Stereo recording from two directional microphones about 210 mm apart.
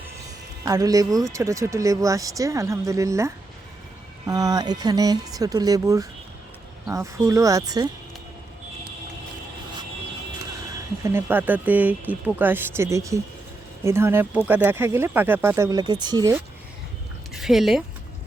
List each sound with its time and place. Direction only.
0.6 s speech: 15° right (ahead or behind)
11.0 s speech: 10° right (ahead or behind)
17.3 s speech: centre (ahead or behind)